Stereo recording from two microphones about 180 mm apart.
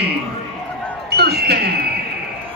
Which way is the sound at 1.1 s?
65° right (ahead or behind).